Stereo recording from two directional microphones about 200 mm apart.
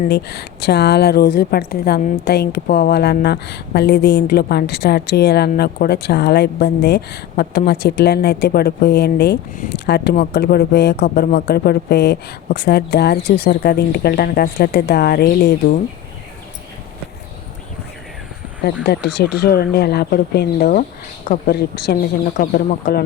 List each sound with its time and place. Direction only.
0.1 s a woman's voice: 55° left (ahead or behind)
18.6 s a woman's voice: 55° left (ahead or behind)